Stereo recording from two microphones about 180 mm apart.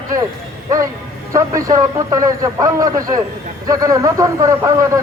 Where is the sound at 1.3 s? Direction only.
15° right (ahead or behind).